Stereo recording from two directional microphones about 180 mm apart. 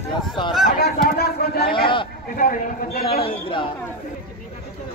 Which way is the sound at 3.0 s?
30° left (ahead or behind).